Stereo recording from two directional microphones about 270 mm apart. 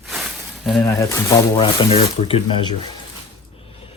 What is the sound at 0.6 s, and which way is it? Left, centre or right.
Speech, centre.